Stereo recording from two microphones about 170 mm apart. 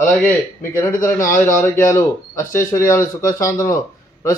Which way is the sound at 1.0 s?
15° left (ahead or behind).